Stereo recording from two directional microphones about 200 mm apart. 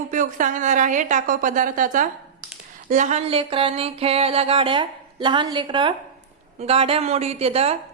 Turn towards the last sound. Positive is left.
turn(degrees=-30)  # may be behind; listen again after turning